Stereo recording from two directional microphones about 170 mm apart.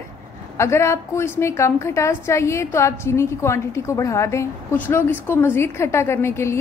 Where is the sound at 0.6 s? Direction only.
15° left (ahead or behind).